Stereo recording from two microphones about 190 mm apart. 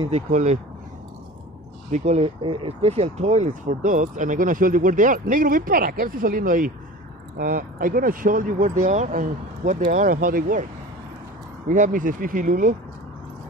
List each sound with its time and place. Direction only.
0.0 s speech: 35° right (ahead or behind)
1.9 s speech: 35° right (ahead or behind)